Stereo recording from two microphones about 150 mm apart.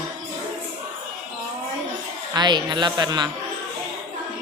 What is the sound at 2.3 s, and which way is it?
Speech, 30° right (ahead or behind).